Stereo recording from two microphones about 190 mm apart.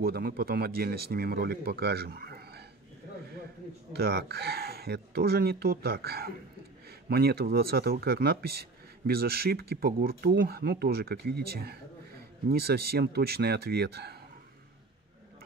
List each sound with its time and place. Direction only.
0.0 s speech: 55° right (ahead or behind)
3.9 s speech: 55° right (ahead or behind)